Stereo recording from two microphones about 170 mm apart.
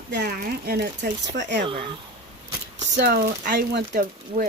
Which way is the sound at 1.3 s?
90° right.